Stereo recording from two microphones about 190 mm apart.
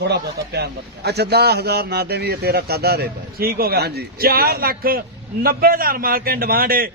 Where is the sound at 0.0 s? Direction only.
60° right (ahead or behind).